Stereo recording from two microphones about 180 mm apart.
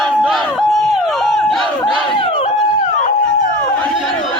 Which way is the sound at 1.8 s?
Centre (ahead or behind).